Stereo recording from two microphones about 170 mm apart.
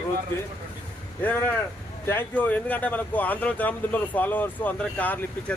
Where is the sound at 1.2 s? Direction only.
10° left (ahead or behind).